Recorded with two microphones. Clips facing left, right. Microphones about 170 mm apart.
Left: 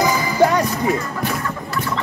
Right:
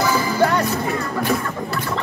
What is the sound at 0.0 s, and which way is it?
Music, 10° left (ahead or behind).